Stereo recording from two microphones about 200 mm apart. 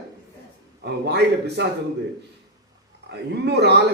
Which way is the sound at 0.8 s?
55° right (ahead or behind).